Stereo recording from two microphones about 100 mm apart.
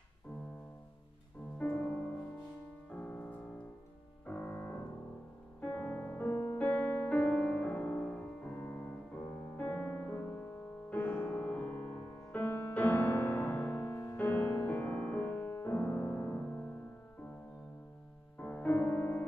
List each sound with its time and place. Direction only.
1.6 s music: 15° left (ahead or behind)
4.3 s piano: 20° left (ahead or behind)
5.6 s music: 15° left (ahead or behind)
6.6 s music: 15° left (ahead or behind)
18.4 s music: 15° left (ahead or behind)